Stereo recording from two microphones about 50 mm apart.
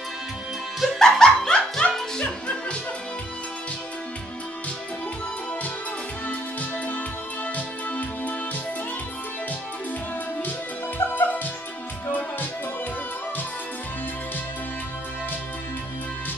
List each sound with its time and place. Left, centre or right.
0.7 s music: centre
7.5 s music: left
11.0 s music: left